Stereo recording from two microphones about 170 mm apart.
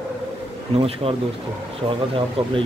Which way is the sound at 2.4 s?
35° right (ahead or behind).